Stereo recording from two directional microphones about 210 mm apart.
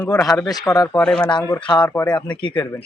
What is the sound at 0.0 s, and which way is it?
Speech, 15° left (ahead or behind).